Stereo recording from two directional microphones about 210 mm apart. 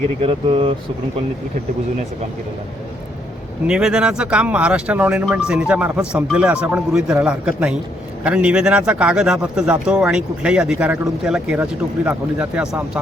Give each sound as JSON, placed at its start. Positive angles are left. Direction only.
{"t": 0.2, "sound": "speech", "side_deg": -25}
{"t": 3.7, "sound": "a man's voice", "side_deg": 0}